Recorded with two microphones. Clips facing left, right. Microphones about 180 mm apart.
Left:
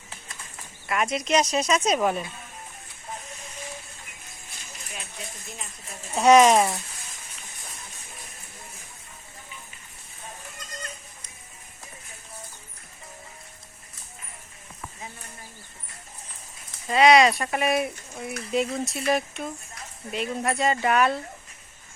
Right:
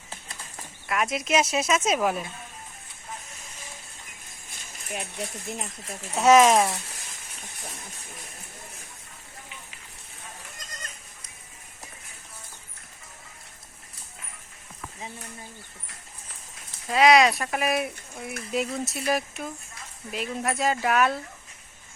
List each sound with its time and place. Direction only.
0.9 s speech: centre (ahead or behind)
4.9 s speech: 55° right (ahead or behind)
6.1 s speech: centre (ahead or behind)
16.8 s speech: centre (ahead or behind)